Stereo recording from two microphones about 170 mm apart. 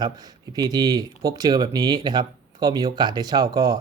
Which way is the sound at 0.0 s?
20° right (ahead or behind).